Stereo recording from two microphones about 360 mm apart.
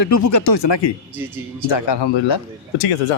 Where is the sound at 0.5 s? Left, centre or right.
Left.